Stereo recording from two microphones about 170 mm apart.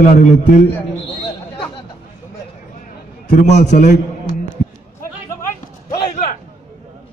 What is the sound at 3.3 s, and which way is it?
Speech, 45° left (ahead or behind).